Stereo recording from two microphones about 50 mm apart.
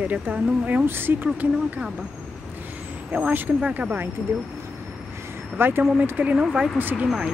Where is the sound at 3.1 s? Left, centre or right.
Right.